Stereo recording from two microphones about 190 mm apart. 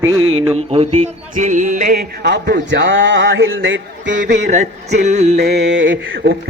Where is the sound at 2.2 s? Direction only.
65° right (ahead or behind); by 3.8 s 85° right.